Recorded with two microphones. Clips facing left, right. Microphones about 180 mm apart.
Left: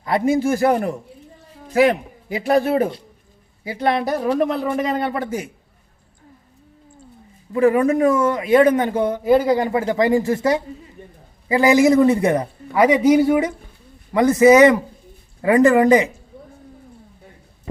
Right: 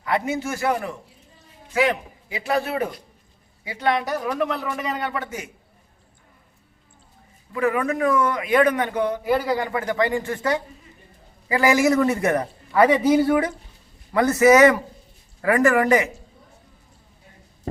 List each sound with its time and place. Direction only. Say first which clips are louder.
0.0 s speech: left 6 dB; 30° left (ahead or behind)
7.5 s a man's voice: left 7 dB; 30° left (ahead or behind)